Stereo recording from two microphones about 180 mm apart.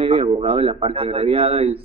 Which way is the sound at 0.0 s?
30° right (ahead or behind).